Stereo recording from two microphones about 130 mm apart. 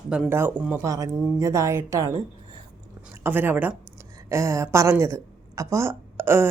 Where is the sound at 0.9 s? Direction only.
25° right (ahead or behind).